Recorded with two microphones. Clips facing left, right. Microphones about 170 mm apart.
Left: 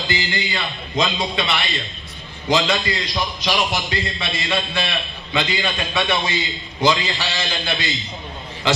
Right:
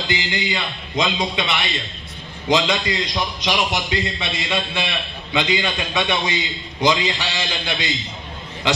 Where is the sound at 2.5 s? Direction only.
20° right (ahead or behind).